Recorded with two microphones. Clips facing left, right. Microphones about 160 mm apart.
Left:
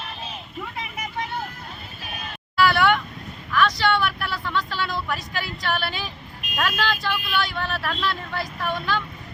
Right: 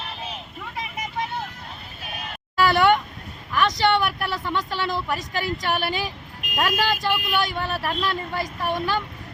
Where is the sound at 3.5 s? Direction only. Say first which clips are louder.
Right 1 dB; 20° right (ahead or behind).